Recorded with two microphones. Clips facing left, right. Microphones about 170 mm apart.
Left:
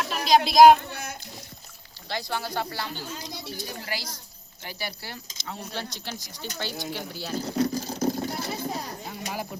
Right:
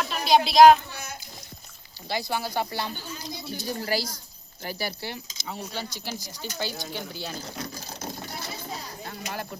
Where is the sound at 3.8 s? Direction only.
35° right (ahead or behind).